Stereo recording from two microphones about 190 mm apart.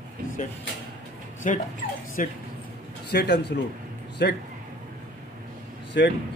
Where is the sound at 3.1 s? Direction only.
60° left (ahead or behind).